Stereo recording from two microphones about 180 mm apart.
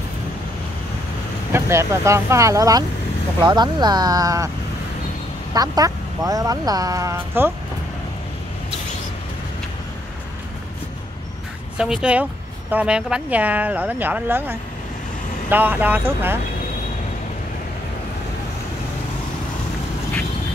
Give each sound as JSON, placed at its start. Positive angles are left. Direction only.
{"t": 1.5, "sound": "speech", "side_deg": -15}
{"t": 5.5, "sound": "speech", "side_deg": -20}
{"t": 11.8, "sound": "speech", "side_deg": -5}